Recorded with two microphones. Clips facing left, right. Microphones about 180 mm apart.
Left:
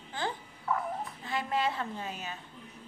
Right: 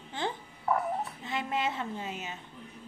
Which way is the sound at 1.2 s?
20° right (ahead or behind).